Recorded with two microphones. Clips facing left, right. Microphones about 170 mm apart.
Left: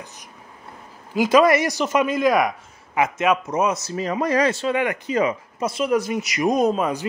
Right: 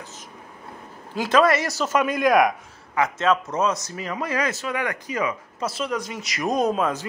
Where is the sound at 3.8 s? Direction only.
30° left (ahead or behind).